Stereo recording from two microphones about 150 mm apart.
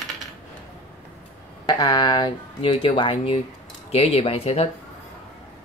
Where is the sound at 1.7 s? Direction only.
25° left (ahead or behind); by 4.6 s 40° left (ahead or behind).